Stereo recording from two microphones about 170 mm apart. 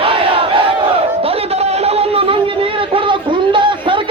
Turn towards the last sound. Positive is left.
turn(degrees=-30)  # may be behind; listen again after turning